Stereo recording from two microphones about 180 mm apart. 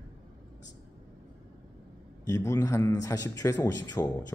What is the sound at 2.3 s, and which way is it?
A man's voice, 20° left (ahead or behind).